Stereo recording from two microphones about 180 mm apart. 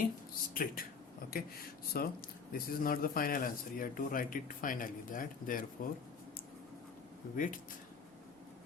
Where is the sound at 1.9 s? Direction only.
55° left (ahead or behind).